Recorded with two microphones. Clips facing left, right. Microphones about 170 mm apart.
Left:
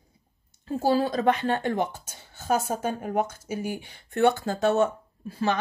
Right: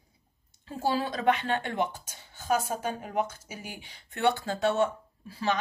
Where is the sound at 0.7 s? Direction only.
40° left (ahead or behind).